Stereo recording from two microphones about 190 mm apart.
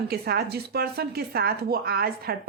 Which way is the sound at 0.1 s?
55° right (ahead or behind).